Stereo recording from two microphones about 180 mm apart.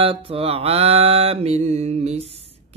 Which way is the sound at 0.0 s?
30° right (ahead or behind).